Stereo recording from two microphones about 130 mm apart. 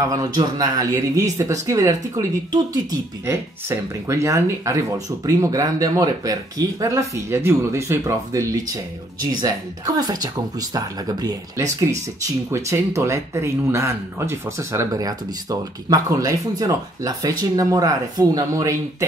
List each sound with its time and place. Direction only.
0.1 s speech: 30° right (ahead or behind)